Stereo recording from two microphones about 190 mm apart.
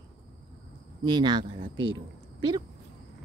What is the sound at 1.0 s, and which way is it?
Speech, 25° right (ahead or behind).